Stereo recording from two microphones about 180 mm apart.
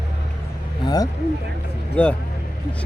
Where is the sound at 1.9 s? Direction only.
5° left (ahead or behind).